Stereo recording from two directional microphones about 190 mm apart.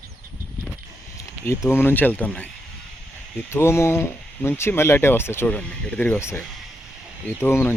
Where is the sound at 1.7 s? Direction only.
10° left (ahead or behind).